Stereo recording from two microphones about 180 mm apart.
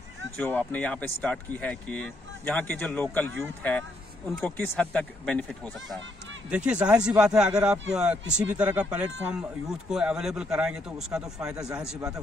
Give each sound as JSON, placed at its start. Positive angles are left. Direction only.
{"t": 0.4, "sound": "speech", "side_deg": 10}
{"t": 4.4, "sound": "speech", "side_deg": 10}
{"t": 6.5, "sound": "speech", "side_deg": -5}
{"t": 11.5, "sound": "a man's voice", "side_deg": -20}